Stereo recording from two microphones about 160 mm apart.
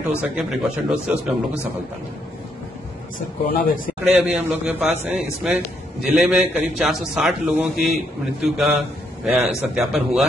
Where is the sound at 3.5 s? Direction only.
60° left (ahead or behind).